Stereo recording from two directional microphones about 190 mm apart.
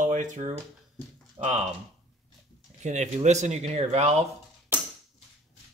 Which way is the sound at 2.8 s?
40° right (ahead or behind).